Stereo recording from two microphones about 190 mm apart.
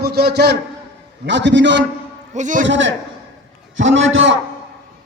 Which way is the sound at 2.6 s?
70° right (ahead or behind).